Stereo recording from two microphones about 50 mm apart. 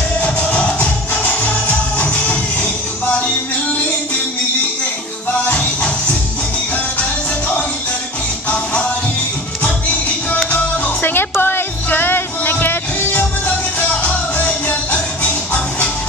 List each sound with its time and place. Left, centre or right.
0.2 s music: left
8.5 s music: left
10.5 s music: left
13.7 s music: left